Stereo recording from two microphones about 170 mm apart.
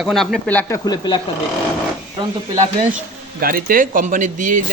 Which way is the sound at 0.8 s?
25° left (ahead or behind).